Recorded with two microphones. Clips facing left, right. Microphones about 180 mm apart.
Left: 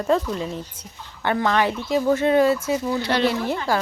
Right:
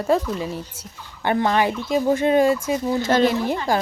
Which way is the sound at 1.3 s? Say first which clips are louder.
Right 1 dB; 20° right (ahead or behind).